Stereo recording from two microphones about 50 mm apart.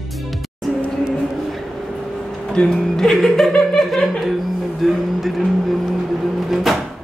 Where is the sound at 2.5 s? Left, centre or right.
Centre.